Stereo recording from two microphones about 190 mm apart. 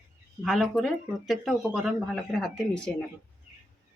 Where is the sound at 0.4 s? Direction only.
Centre (ahead or behind).